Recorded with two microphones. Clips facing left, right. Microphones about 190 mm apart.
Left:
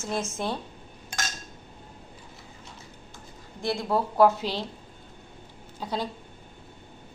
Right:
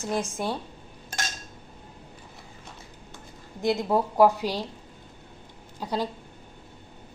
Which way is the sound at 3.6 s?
20° right (ahead or behind).